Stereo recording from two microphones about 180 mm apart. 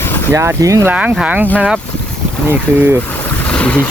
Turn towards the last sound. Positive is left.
turn(degrees=5)  # may be behind; listen again after turning